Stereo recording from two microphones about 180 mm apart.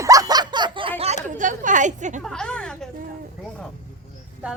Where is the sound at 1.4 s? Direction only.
45° right (ahead or behind).